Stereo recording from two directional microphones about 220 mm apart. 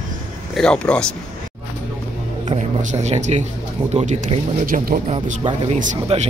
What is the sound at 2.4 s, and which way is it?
A man's voice, 30° right (ahead or behind).